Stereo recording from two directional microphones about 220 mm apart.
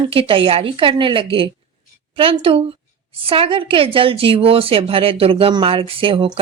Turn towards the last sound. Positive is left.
turn(degrees=-25)  # may be behind; listen again after turning